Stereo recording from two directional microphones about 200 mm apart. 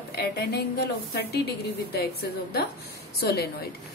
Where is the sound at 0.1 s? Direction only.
55° left (ahead or behind).